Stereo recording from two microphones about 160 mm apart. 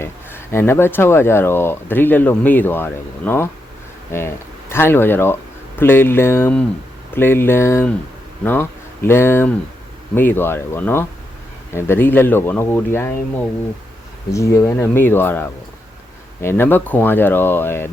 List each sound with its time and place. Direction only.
0.0 s speech: 15° left (ahead or behind)
14.3 s speech: 20° left (ahead or behind)